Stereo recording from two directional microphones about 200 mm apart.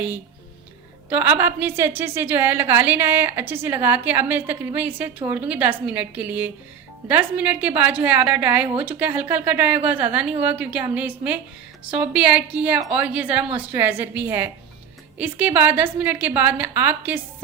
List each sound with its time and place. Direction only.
1.1 s a woman's voice: 10° right (ahead or behind)